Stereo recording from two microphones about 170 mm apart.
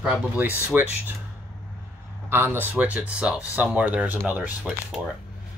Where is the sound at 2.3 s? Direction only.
15° right (ahead or behind).